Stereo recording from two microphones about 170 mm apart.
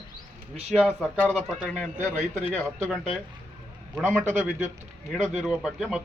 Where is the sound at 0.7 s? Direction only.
Centre (ahead or behind).